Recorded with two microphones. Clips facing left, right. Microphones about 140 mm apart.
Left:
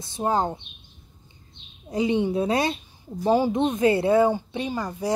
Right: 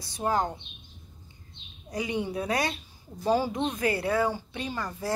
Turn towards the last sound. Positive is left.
turn(degrees=15)  # may be behind; listen again after turning